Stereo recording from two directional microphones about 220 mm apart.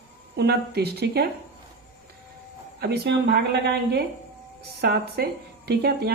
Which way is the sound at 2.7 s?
45° right (ahead or behind).